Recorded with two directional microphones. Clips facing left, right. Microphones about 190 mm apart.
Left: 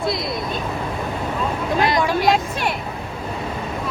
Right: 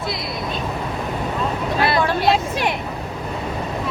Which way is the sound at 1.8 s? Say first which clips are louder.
Even; 15° left (ahead or behind).